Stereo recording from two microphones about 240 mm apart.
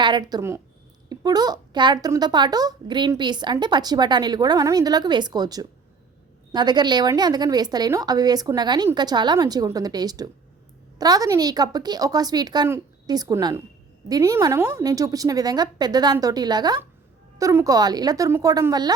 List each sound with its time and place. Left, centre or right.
0.0 s a child's voice: centre